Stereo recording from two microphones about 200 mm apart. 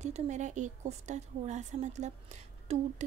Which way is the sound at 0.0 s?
35° right (ahead or behind).